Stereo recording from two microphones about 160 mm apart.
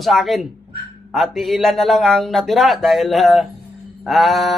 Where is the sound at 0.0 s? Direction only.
Centre (ahead or behind).